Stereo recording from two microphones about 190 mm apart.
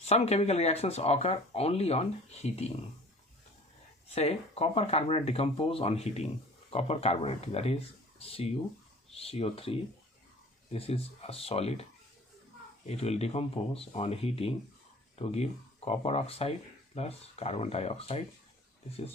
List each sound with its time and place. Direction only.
0.0 s speech: 35° left (ahead or behind)
4.1 s speech: 35° left (ahead or behind)